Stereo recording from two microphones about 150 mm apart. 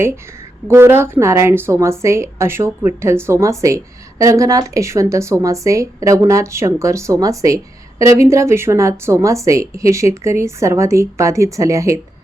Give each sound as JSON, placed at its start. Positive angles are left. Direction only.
{"t": 0.7, "sound": "a woman's voice", "side_deg": -15}